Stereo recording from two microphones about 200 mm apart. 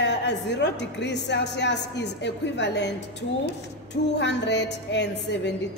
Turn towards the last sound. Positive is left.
turn(degrees=60)  # may be behind; listen again after turning